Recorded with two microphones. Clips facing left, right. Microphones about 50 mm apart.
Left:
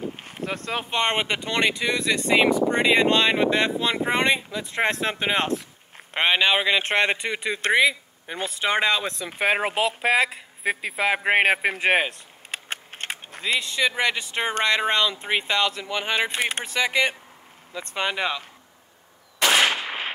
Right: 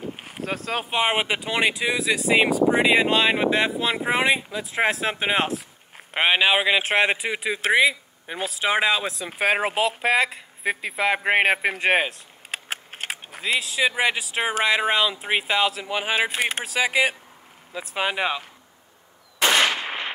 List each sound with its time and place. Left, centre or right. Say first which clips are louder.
0.2 s speech: right 1 dB; centre